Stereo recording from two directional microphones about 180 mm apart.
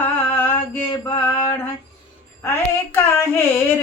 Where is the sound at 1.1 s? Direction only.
10° left (ahead or behind).